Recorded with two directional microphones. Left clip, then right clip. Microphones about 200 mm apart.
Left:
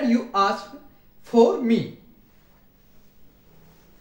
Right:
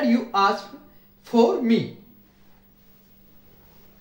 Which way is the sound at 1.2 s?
20° right (ahead or behind).